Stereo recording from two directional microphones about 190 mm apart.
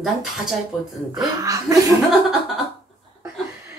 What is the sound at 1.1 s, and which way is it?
Speech, 20° right (ahead or behind).